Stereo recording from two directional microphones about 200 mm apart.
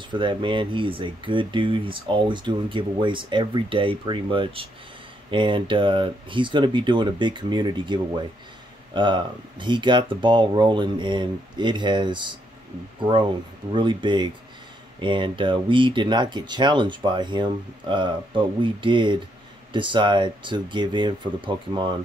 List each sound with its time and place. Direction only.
0.1 s speech: 25° right (ahead or behind)
13.7 s speech: 25° right (ahead or behind)